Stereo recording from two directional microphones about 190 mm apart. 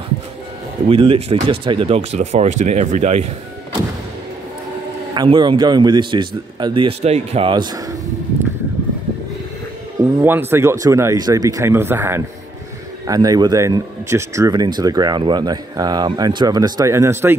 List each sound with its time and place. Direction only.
0.8 s speech: 30° right (ahead or behind)
5.1 s speech: 25° right (ahead or behind)
9.9 s speech: 10° right (ahead or behind)